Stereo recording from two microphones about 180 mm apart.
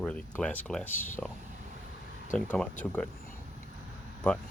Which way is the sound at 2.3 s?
5° left (ahead or behind).